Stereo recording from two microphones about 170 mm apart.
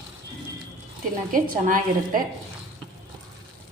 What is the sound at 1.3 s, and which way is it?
Speech, 55° right (ahead or behind).